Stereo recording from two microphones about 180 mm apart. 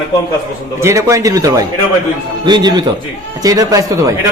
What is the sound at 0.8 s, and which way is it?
A man's voice, 15° right (ahead or behind).